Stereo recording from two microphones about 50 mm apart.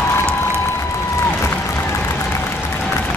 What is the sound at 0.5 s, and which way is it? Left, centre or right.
Applause, left.